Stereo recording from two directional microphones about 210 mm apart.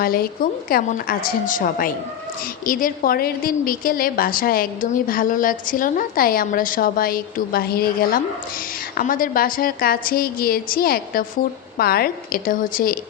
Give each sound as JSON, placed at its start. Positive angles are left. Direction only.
{"t": 0.0, "sound": "a woman's voice", "side_deg": 45}